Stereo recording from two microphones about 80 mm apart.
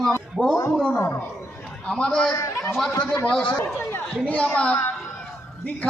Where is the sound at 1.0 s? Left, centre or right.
Left.